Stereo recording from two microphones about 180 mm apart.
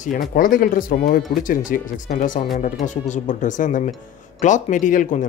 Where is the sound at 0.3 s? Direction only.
50° left (ahead or behind).